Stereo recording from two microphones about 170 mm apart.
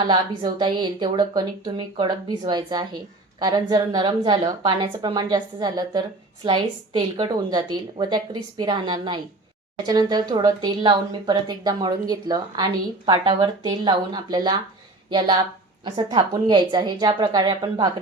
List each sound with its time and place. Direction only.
0.1 s a woman's voice: 25° right (ahead or behind)
15.8 s a woman's voice: 25° right (ahead or behind)